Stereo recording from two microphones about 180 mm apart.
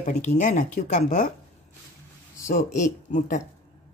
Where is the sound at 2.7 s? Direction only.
45° left (ahead or behind).